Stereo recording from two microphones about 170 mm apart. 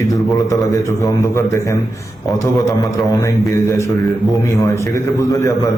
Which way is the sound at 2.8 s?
20° left (ahead or behind).